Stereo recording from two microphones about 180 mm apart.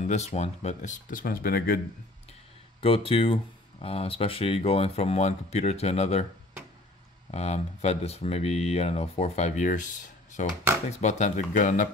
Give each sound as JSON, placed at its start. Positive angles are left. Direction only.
{"t": 0.0, "sound": "speech", "side_deg": 40}
{"t": 2.8, "sound": "speech", "side_deg": 30}
{"t": 7.2, "sound": "speech", "side_deg": 35}